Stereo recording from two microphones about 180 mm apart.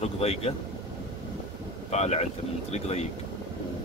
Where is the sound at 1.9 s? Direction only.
35° left (ahead or behind).